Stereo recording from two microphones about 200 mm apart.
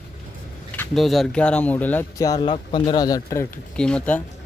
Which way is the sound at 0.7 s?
Centre (ahead or behind).